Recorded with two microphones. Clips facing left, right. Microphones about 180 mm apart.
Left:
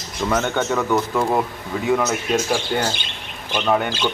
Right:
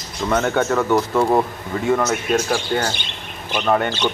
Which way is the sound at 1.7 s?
5° left (ahead or behind).